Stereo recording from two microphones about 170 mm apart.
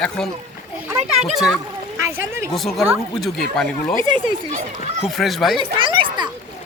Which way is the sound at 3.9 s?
30° right (ahead or behind).